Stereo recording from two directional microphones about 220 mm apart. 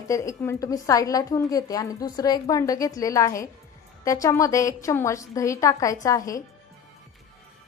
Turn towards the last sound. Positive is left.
turn(degrees=15)  # may be behind; listen again after turning